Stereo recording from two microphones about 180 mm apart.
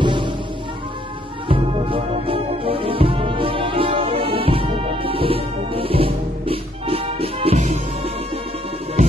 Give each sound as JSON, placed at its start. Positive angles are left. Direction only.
{"t": 0.0, "sound": "music", "side_deg": -25}
{"t": 1.5, "sound": "music", "side_deg": -30}